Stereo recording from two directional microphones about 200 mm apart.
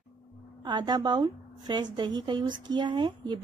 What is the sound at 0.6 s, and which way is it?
A woman's voice, 20° right (ahead or behind).